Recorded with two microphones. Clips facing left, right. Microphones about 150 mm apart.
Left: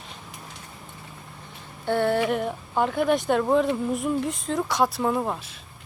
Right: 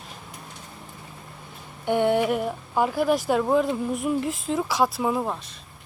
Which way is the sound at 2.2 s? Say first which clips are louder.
Right 1 dB; 5° right (ahead or behind).